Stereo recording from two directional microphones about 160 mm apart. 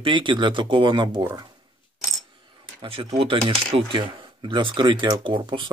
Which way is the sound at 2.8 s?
30° right (ahead or behind).